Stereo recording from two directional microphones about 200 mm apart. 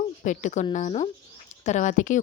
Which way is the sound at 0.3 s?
35° left (ahead or behind).